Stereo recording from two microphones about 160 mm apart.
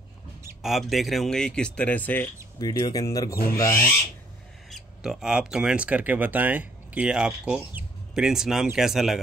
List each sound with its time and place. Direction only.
0.6 s speech: centre (ahead or behind)
2.6 s speech: 20° left (ahead or behind)
3.5 s owl: 15° left (ahead or behind)
4.6 s speech: centre (ahead or behind)